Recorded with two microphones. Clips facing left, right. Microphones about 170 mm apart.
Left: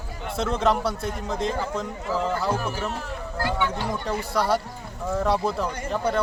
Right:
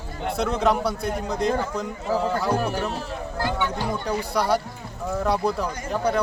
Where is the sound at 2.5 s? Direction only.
65° right (ahead or behind).